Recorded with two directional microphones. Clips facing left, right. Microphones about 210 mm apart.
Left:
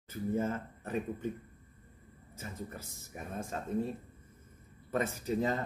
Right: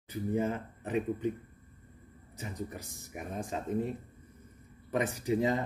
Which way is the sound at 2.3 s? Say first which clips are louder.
Right 3 dB; 15° right (ahead or behind).